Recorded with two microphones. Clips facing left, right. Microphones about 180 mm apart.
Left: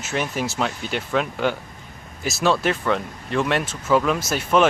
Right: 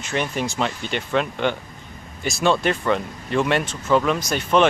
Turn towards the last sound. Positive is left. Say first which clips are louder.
# even
turn(degrees=5)  # may be behind; listen again after turning